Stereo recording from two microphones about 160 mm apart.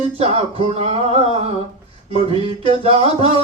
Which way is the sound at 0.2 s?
40° right (ahead or behind).